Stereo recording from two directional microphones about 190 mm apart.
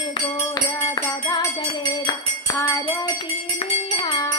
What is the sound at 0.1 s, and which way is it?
Music, 25° left (ahead or behind).